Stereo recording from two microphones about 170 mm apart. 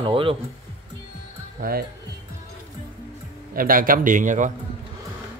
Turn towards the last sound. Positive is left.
turn(degrees=-50)  # may be behind; listen again after turning